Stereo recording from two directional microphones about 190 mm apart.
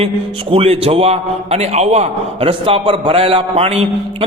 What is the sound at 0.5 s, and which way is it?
A man's voice, 30° right (ahead or behind).